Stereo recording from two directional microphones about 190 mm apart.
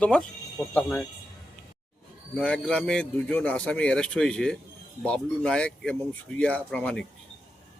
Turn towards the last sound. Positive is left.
turn(degrees=5)  # may be behind; listen again after turning